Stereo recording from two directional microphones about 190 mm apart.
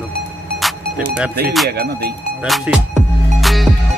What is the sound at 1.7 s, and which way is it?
Speech, 55° right (ahead or behind).